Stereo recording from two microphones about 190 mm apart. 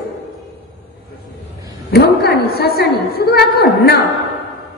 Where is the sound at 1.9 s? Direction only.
55° left (ahead or behind).